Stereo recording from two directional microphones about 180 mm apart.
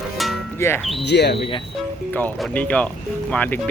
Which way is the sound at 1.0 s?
70° left (ahead or behind).